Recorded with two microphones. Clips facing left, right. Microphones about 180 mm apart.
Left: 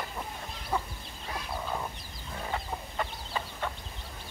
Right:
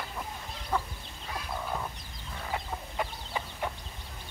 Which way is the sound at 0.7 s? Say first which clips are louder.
Right 1 dB; 10° left (ahead or behind).